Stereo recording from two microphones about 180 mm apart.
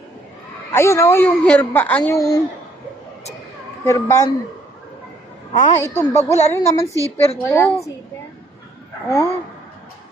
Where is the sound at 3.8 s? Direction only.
15° left (ahead or behind).